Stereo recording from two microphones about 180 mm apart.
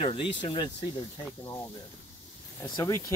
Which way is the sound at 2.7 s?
20° left (ahead or behind).